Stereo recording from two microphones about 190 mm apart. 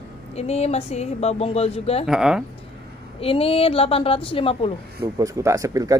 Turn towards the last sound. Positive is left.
turn(degrees=-15)  # may be behind; listen again after turning